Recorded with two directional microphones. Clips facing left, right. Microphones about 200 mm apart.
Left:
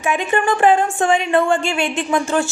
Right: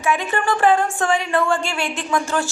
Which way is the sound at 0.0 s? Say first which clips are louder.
Left 3 dB; 20° left (ahead or behind).